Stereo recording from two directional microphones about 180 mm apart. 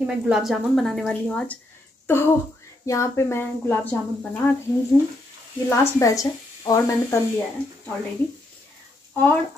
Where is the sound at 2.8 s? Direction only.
15° left (ahead or behind).